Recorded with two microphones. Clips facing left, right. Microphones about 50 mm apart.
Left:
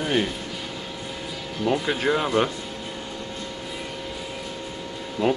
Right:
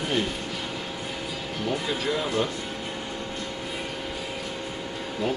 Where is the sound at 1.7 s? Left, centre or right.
Left.